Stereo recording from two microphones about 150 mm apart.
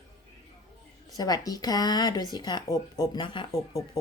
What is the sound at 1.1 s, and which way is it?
Speech, 25° left (ahead or behind).